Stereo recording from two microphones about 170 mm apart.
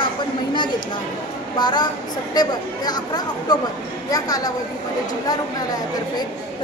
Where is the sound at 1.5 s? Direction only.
25° left (ahead or behind).